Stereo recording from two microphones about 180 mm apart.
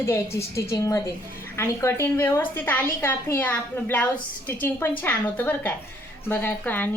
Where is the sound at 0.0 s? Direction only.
15° left (ahead or behind).